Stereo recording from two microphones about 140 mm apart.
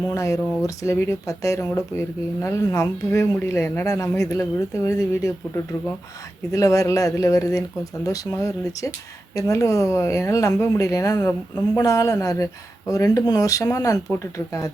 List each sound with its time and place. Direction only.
0.1 s speech: 20° left (ahead or behind)
6.5 s speech: 25° left (ahead or behind)
11.2 s a woman's voice: 10° left (ahead or behind)
11.8 s speech: 25° left (ahead or behind)